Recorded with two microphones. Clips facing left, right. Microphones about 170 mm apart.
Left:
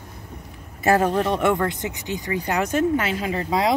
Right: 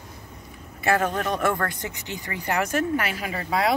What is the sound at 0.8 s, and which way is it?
Speech, 35° left (ahead or behind).